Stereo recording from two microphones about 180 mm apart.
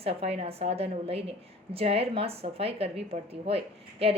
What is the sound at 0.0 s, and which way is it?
A woman's voice, 35° right (ahead or behind).